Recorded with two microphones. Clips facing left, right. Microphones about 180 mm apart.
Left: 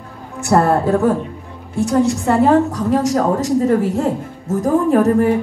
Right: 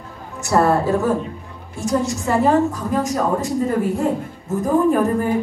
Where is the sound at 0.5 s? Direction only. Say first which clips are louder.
Left 3 dB; 55° left (ahead or behind).